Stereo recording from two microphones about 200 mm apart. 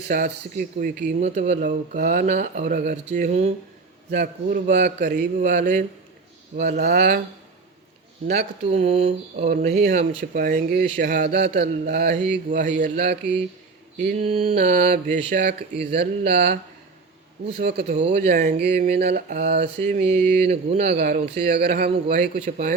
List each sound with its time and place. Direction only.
0.1 s speech: 45° right (ahead or behind)
6.6 s speech: 50° right (ahead or behind)
8.7 s speech: 30° right (ahead or behind)
9.5 s speech: 45° right (ahead or behind)
12.5 s speech: 40° right (ahead or behind)
14.1 s speech: 35° right (ahead or behind)
15.4 s speech: 55° right (ahead or behind)
20.5 s speech: 35° right (ahead or behind)
20.9 s speech: 50° right (ahead or behind)
22.4 s speech: 35° right (ahead or behind)